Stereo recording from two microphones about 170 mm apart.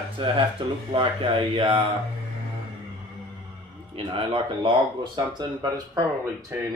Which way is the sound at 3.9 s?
30° right (ahead or behind).